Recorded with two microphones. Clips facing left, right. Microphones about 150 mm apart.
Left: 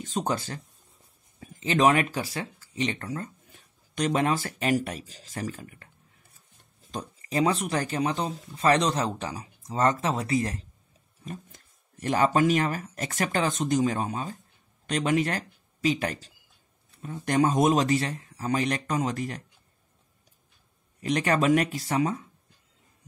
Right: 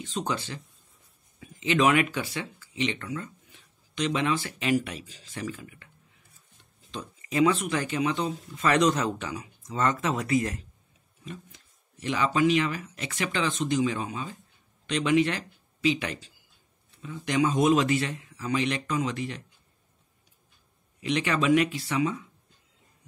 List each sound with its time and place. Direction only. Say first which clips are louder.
0.0 s speech: left 2 dB; 45° left (ahead or behind)
6.9 s speech: left 1 dB; 40° left (ahead or behind)
11.2 s speech: left 2 dB; 45° left (ahead or behind)
21.0 s speech: left 2 dB; 45° left (ahead or behind)